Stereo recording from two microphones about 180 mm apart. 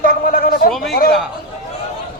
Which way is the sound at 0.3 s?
55° left (ahead or behind).